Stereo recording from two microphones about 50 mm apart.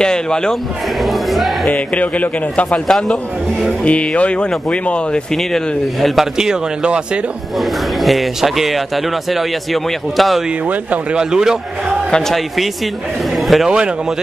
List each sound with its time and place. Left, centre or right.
0.0 s a man's voice: centre
1.0 s music: centre
1.7 s a man's voice: left
2.9 s a man's voice: centre
3.8 s a man's voice: left
5.3 s speech: centre
6.3 s speech: centre
7.5 s speech: centre
10.7 s speech: right
11.1 s speech: centre
13.4 s a man's voice: centre
13.7 s speech: centre